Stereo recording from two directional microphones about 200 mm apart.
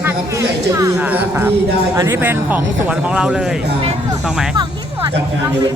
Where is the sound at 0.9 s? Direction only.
10° right (ahead or behind).